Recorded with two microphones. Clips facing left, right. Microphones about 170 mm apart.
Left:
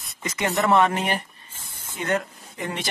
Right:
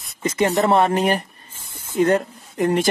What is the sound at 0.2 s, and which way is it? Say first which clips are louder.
Speech: right 6 dB; 30° right (ahead or behind).